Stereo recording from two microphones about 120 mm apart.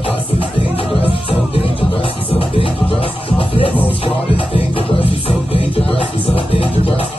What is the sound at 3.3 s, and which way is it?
Music, 50° left (ahead or behind).